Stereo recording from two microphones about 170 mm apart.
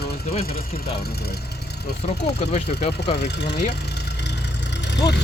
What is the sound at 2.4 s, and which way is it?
Speech, 40° left (ahead or behind).